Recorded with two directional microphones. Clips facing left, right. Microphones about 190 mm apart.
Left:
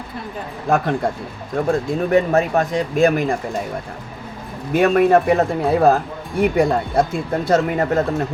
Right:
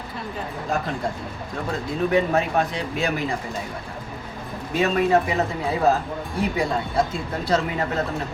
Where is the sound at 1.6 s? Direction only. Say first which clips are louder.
Left 5 dB; 45° left (ahead or behind).